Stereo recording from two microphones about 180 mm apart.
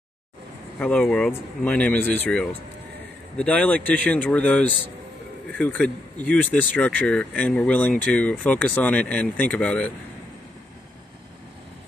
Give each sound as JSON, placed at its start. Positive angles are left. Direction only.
{"t": 0.7, "sound": "speech", "side_deg": 5}